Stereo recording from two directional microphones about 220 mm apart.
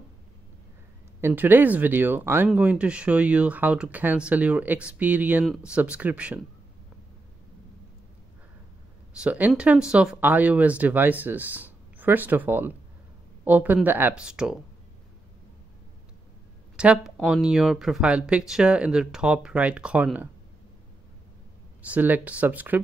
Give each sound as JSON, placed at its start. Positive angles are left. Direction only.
{"t": 1.2, "sound": "speech", "side_deg": -10}
{"t": 9.1, "sound": "speech", "side_deg": -5}
{"t": 16.7, "sound": "speech", "side_deg": -5}
{"t": 21.8, "sound": "speech", "side_deg": -5}